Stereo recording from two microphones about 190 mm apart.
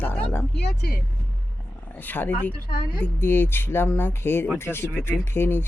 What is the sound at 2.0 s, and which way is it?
Speech, 10° left (ahead or behind).